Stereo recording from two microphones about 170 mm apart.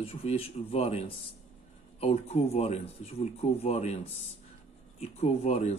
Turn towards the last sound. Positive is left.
turn(degrees=40)  # may be behind; listen again after turning